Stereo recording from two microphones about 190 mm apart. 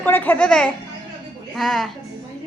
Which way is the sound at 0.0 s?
10° left (ahead or behind).